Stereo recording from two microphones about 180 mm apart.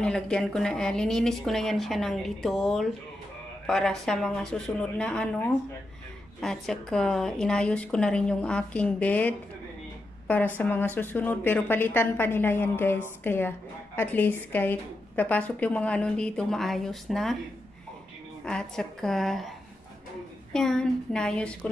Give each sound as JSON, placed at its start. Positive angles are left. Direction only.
{"t": 0.0, "sound": "a woman's voice", "side_deg": 5}
{"t": 18.4, "sound": "a woman's voice", "side_deg": 5}
{"t": 20.5, "sound": "a woman's voice", "side_deg": 5}